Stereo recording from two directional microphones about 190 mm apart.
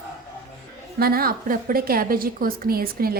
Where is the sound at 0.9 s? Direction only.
50° right (ahead or behind).